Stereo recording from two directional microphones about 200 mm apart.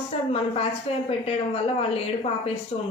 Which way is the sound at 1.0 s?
30° left (ahead or behind).